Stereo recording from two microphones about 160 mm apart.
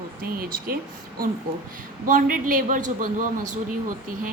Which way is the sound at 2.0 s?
60° right (ahead or behind).